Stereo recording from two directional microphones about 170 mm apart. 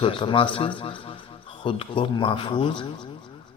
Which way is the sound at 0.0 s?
30° left (ahead or behind).